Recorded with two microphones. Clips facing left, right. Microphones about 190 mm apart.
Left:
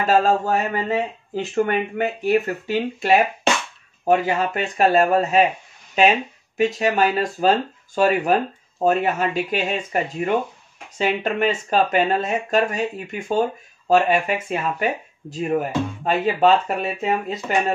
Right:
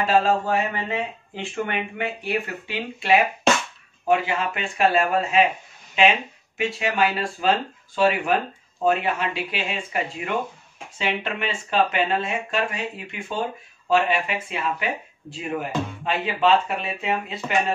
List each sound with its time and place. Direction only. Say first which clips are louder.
0.0 s speech: left 2 dB; 45° left (ahead or behind)